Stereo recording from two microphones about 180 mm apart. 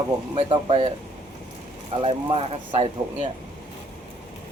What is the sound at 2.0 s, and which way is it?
Speech, 35° right (ahead or behind).